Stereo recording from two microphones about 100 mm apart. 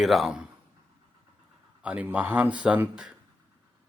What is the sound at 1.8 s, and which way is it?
Speech, 15° right (ahead or behind).